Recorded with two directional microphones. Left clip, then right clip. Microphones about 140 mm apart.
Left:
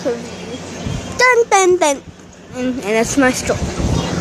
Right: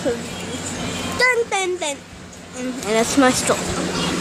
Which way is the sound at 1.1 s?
20° left (ahead or behind).